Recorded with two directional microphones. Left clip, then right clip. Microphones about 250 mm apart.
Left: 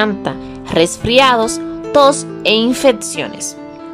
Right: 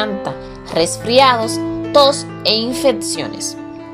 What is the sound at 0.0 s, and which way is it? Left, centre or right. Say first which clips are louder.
Speech: left 3 dB; centre.